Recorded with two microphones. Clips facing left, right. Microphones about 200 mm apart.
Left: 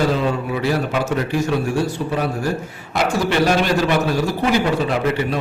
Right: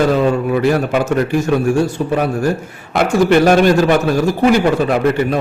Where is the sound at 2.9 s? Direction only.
50° right (ahead or behind).